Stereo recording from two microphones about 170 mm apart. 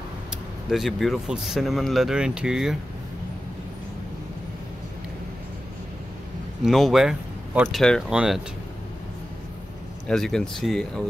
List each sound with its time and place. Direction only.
0.7 s speech: centre (ahead or behind)
6.6 s speech: centre (ahead or behind)
10.0 s speech: 5° left (ahead or behind)